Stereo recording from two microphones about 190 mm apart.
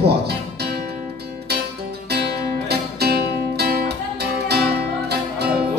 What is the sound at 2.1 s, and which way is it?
Music, 55° right (ahead or behind).